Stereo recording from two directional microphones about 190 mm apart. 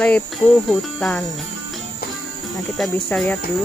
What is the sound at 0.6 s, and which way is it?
Speech, 5° left (ahead or behind).